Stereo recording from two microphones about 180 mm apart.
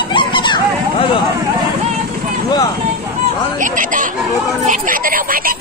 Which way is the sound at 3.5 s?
45° right (ahead or behind).